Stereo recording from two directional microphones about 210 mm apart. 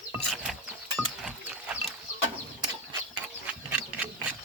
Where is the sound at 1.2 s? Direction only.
5° right (ahead or behind).